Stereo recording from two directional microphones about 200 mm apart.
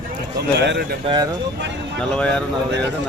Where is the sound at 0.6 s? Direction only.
55° right (ahead or behind).